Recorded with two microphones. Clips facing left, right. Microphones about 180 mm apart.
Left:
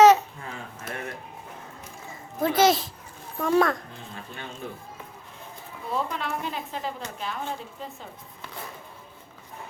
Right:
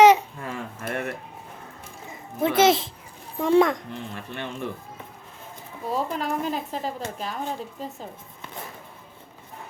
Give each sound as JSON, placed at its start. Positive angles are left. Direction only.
{"t": 0.4, "sound": "a sound", "side_deg": -60}
{"t": 2.4, "sound": "a child's voice", "side_deg": -25}
{"t": 4.1, "sound": "speech", "side_deg": -70}
{"t": 5.9, "sound": "speech", "side_deg": -40}